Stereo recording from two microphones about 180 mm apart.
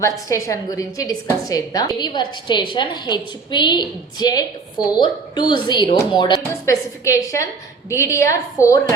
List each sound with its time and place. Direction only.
0.0 s a woman's voice: 20° left (ahead or behind)